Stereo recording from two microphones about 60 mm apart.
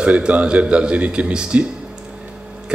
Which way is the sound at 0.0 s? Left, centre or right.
Centre.